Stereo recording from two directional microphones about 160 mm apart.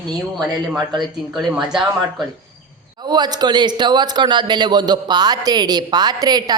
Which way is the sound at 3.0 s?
25° right (ahead or behind).